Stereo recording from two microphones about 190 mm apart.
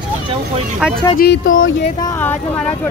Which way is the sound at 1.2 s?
50° left (ahead or behind).